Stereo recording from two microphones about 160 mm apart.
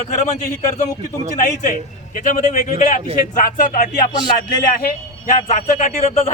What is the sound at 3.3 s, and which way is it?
Music, 55° left (ahead or behind).